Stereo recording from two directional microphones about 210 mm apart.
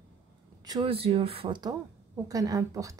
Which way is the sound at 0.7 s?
25° right (ahead or behind).